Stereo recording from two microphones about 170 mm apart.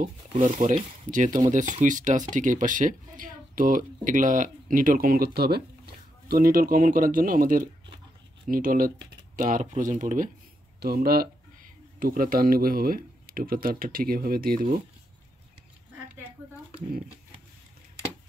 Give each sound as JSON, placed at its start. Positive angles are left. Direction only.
{"t": 0.0, "sound": "speech", "side_deg": -45}
{"t": 10.8, "sound": "speech", "side_deg": -65}